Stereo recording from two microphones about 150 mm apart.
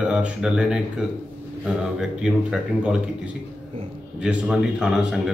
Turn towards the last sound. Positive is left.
turn(degrees=0)  # may be behind; listen again after turning